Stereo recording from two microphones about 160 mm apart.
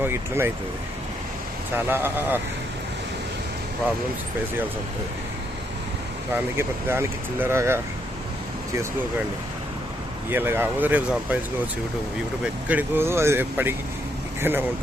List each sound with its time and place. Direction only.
0.0 s speech: 15° right (ahead or behind)
1.7 s speech: 15° right (ahead or behind)
6.3 s speech: 15° right (ahead or behind)
10.3 s speech: 15° right (ahead or behind)
12.6 s speech: 10° right (ahead or behind)